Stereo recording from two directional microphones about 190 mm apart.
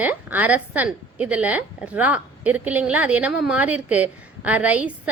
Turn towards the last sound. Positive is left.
turn(degrees=-5)  # may be behind; listen again after turning